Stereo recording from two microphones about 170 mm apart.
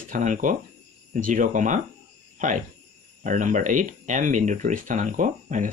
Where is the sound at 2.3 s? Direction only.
50° right (ahead or behind).